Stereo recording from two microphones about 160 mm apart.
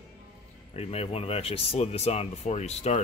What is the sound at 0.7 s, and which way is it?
Speech, 40° left (ahead or behind).